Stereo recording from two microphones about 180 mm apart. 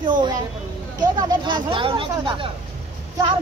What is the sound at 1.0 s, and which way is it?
Speech, 25° right (ahead or behind).